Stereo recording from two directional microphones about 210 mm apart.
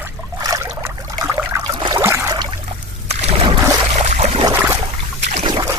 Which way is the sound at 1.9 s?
15° right (ahead or behind).